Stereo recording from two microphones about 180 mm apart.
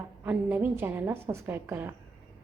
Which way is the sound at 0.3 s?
10° right (ahead or behind).